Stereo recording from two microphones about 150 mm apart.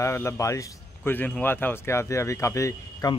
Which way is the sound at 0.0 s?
15° left (ahead or behind).